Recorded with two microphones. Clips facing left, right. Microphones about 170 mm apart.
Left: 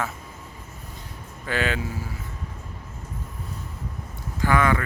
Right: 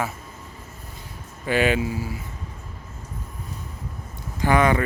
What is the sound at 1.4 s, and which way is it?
Speech, 15° right (ahead or behind).